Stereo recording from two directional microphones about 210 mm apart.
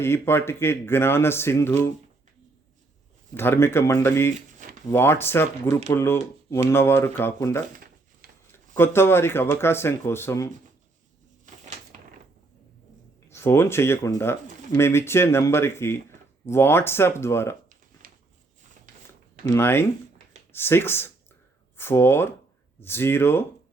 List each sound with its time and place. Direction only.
0.0 s speech: 10° left (ahead or behind)
3.3 s speech: 10° left (ahead or behind)
11.9 s typewriter: 40° right (ahead or behind)
13.3 s speech: 10° left (ahead or behind)
18.0 s a sound: 45° right (ahead or behind)
19.5 s speech: 10° left (ahead or behind)